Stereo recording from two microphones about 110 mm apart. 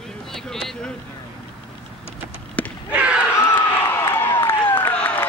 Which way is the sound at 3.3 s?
25° left (ahead or behind).